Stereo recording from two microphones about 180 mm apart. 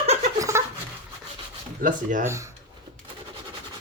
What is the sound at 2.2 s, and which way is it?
Speech, 15° right (ahead or behind).